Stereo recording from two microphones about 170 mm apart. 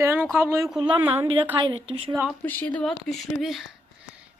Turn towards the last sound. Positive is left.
turn(degrees=0)  # may be behind; listen again after turning